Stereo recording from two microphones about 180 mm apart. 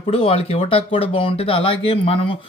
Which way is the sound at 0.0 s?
30° left (ahead or behind).